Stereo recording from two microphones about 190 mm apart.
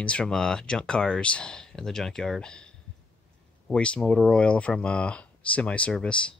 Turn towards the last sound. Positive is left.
turn(degrees=5)  # may be behind; listen again after turning